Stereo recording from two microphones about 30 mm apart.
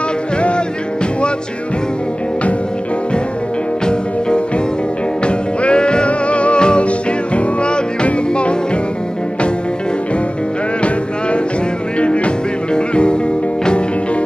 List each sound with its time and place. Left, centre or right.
5.2 s music: left
6.0 s music: left
10.8 s music: left